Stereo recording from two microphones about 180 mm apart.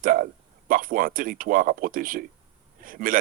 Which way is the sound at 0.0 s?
50° right (ahead or behind).